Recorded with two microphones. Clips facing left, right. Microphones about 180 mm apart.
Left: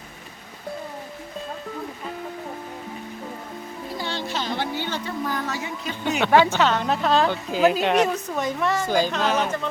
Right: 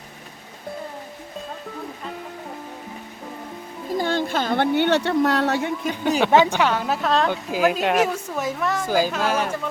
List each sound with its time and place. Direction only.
3.9 s music: 50° right (ahead or behind)
4.3 s a woman's voice: 55° right (ahead or behind)
6.2 s a woman's voice: 15° right (ahead or behind)